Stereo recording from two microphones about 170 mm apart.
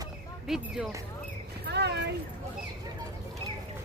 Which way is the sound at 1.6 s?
80° right.